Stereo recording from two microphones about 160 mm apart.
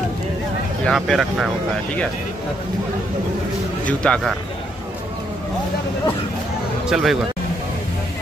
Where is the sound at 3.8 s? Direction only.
5° left (ahead or behind).